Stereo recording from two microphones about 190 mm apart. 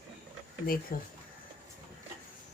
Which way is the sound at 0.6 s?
50° left (ahead or behind).